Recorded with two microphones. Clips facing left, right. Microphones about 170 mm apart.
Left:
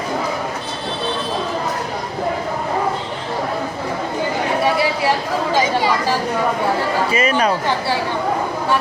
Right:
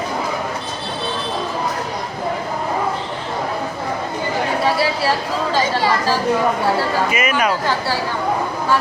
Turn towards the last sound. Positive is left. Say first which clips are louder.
# left 2 dB
turn(degrees=30)  # may be behind; listen again after turning